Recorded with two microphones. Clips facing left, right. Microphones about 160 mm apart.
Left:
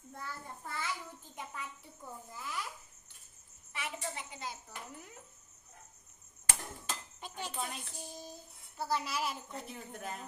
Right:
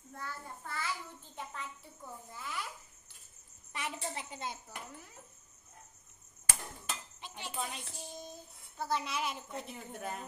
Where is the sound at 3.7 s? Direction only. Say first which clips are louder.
Right 1 dB; 35° right (ahead or behind).